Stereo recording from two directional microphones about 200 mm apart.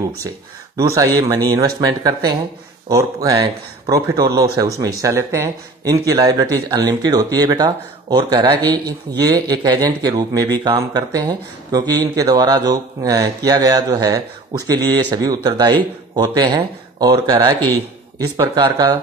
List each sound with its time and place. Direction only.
0.7 s speech: 15° right (ahead or behind)